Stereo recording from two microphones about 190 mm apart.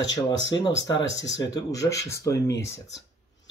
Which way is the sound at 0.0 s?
20° left (ahead or behind).